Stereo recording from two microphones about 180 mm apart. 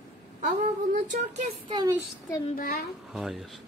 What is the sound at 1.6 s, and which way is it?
Speech, 20° right (ahead or behind).